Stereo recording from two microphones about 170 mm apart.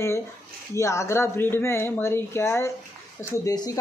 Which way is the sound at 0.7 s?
15° left (ahead or behind).